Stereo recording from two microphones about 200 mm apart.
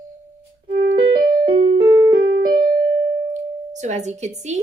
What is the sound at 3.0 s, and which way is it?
Music, 40° right (ahead or behind).